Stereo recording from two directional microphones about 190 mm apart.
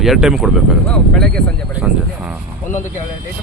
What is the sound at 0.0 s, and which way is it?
Speech, centre (ahead or behind).